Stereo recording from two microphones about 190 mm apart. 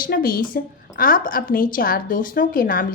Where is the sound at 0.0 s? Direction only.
50° left (ahead or behind).